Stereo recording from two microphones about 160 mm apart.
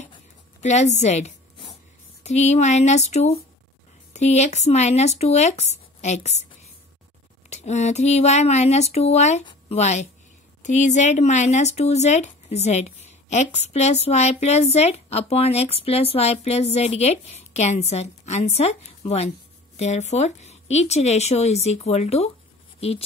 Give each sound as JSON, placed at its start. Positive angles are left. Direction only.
{"t": 0.6, "sound": "speech", "side_deg": 45}
{"t": 7.4, "sound": "a woman's voice", "side_deg": 45}